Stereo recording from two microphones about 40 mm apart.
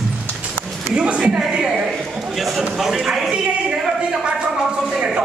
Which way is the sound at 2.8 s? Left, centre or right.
Centre.